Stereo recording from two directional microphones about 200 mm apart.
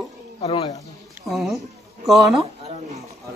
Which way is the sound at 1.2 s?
Centre (ahead or behind).